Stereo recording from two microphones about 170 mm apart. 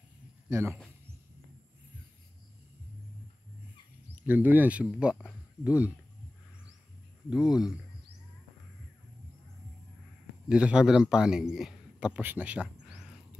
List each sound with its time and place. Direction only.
0.5 s speech: 15° right (ahead or behind)
4.1 s speech: 10° right (ahead or behind)
7.2 s a man's voice: 5° right (ahead or behind)
10.5 s a man's voice: 5° right (ahead or behind)